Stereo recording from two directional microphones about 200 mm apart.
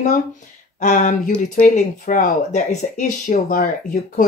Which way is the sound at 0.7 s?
40° left (ahead or behind).